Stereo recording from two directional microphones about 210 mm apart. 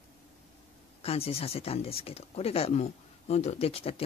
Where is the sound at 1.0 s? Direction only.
30° left (ahead or behind).